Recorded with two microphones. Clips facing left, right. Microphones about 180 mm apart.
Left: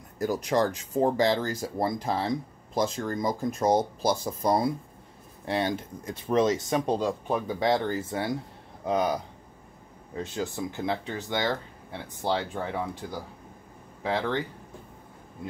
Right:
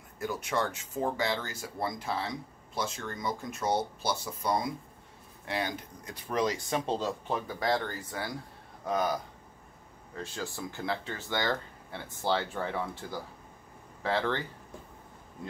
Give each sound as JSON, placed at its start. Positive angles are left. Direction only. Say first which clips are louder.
{"t": 0.2, "sound": "speech", "louder": "left 7 dB", "side_deg": 35}